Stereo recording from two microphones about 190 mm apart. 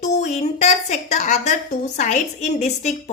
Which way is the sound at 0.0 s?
35° left (ahead or behind).